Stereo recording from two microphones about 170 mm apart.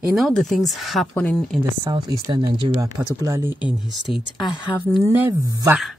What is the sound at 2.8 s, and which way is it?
Speech, 20° right (ahead or behind).